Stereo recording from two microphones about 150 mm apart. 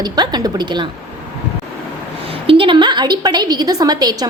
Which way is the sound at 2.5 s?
35° right (ahead or behind).